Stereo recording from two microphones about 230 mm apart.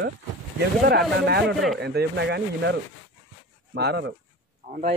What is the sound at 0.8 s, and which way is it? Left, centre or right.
A man's voice, right.